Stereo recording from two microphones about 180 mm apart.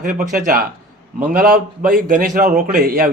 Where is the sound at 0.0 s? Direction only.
50° right (ahead or behind).